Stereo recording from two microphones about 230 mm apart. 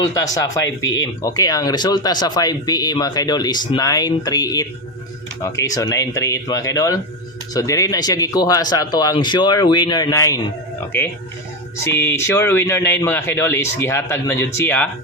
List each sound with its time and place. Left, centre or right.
0.1 s speech: centre
0.6 s speech: left
1.2 s speech: centre
11.8 s speech: centre